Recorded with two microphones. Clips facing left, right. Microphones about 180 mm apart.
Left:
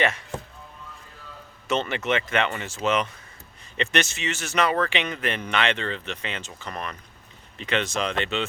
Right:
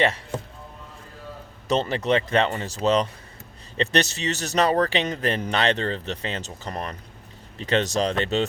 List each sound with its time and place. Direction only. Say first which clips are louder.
0.0 s speech: right 2 dB; 30° right (ahead or behind)
1.6 s speech: right 3 dB; 35° right (ahead or behind)